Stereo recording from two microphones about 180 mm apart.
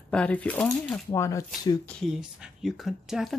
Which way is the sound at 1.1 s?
15° left (ahead or behind).